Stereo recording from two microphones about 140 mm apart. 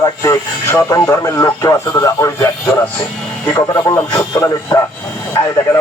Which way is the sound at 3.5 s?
25° left (ahead or behind).